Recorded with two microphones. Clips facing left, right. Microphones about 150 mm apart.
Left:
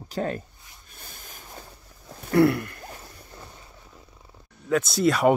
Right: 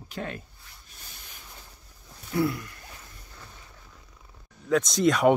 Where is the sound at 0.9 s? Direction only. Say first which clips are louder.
Left 6 dB; 50° left (ahead or behind).